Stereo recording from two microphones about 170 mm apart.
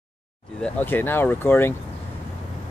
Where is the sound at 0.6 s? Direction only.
10° left (ahead or behind).